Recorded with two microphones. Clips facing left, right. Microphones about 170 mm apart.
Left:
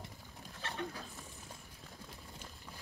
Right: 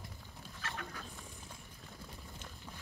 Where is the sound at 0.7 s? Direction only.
25° left (ahead or behind).